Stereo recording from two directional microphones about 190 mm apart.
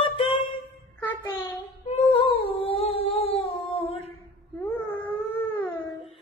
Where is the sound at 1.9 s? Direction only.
30° left (ahead or behind).